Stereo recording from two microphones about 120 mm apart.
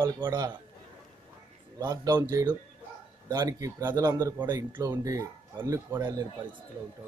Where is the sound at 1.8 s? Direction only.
35° right (ahead or behind).